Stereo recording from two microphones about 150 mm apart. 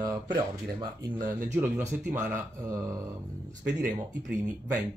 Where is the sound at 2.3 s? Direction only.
20° right (ahead or behind).